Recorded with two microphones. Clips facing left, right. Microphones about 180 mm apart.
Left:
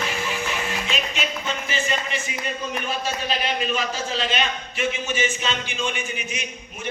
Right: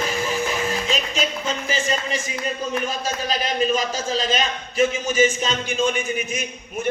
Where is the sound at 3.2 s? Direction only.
40° right (ahead or behind).